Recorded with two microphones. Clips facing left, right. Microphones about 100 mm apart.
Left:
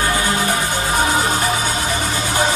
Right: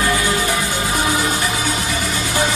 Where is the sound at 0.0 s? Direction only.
30° left (ahead or behind).